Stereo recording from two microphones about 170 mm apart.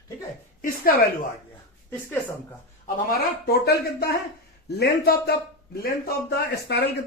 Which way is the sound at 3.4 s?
65° left (ahead or behind).